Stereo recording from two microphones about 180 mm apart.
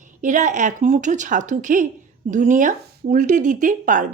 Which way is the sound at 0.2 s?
45° right (ahead or behind).